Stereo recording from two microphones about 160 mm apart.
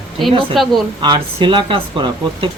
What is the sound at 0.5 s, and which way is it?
Speech, centre (ahead or behind).